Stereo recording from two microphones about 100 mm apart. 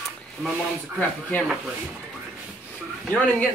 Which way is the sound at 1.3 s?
20° left (ahead or behind).